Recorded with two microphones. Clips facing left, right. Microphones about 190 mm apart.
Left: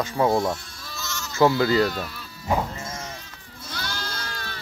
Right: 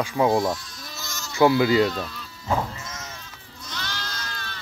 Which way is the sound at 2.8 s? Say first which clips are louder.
Left 4 dB; 30° left (ahead or behind).